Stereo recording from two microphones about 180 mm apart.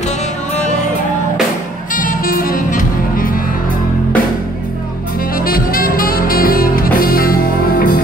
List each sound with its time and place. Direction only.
2.0 s music: 50° left (ahead or behind)
5.4 s music: 55° left (ahead or behind)